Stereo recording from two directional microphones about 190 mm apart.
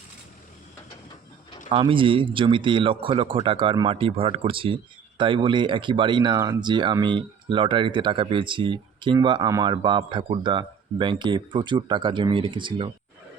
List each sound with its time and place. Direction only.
1.7 s speech: 25° right (ahead or behind)